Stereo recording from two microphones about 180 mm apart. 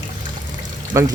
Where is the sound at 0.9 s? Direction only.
15° right (ahead or behind).